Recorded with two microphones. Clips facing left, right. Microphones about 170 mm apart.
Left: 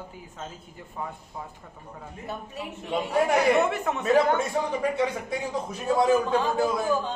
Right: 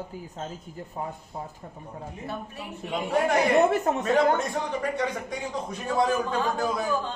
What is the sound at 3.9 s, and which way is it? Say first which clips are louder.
Speech: right 3 dB; 35° right (ahead or behind).